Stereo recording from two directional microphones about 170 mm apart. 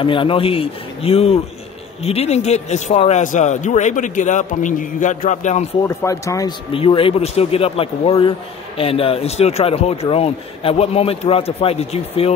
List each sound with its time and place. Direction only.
0.0 s speech: 30° left (ahead or behind)
5.9 s speech: 20° left (ahead or behind)
6.7 s speech: 35° left (ahead or behind)